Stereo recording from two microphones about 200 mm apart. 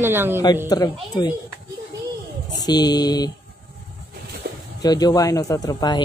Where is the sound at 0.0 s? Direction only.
10° right (ahead or behind).